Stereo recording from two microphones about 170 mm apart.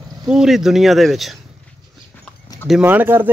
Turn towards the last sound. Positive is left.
turn(degrees=-10)  # may be behind; listen again after turning